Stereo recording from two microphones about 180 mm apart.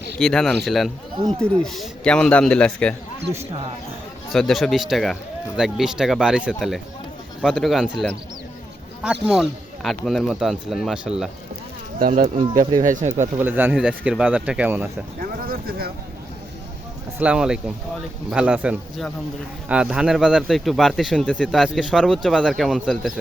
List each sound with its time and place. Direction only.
0.2 s speech: 5° left (ahead or behind)
1.6 s speech: centre (ahead or behind)
4.3 s speech: centre (ahead or behind)
9.2 s speech: 5° right (ahead or behind)
11.9 s speech: 50° right (ahead or behind)
13.4 s speech: 10° right (ahead or behind)
15.2 s a sound: 55° right (ahead or behind)
17.2 s speech: 5° right (ahead or behind)